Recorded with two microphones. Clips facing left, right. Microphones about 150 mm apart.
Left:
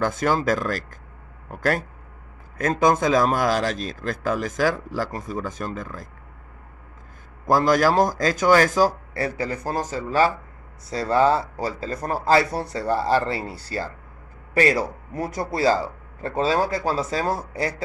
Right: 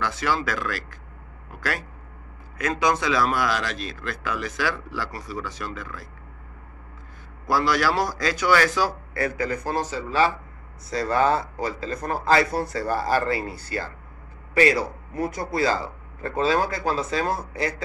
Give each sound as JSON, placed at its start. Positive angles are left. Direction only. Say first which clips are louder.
{"t": 0.0, "sound": "speech", "louder": "left 4 dB", "side_deg": 45}
{"t": 7.4, "sound": "speech", "louder": "left 4 dB", "side_deg": 45}
{"t": 10.9, "sound": "speech", "louder": "left 2 dB", "side_deg": 30}
{"t": 14.5, "sound": "speech", "louder": "even", "side_deg": 45}